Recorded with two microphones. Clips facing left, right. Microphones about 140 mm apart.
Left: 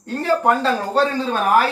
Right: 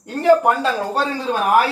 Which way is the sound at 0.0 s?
15° right (ahead or behind).